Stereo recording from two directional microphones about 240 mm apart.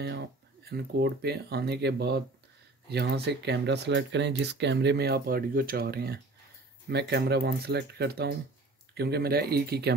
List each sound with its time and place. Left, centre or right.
0.7 s speech: right